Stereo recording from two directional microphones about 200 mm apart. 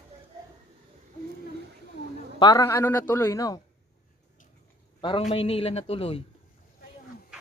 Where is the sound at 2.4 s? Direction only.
20° left (ahead or behind).